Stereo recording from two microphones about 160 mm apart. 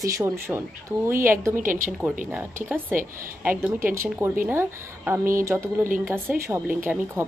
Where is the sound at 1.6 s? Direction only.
55° right (ahead or behind).